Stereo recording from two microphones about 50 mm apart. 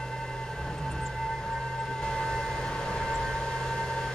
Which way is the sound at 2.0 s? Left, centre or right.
Centre.